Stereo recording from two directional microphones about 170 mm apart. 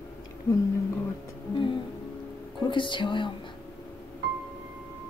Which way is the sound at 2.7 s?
30° left (ahead or behind).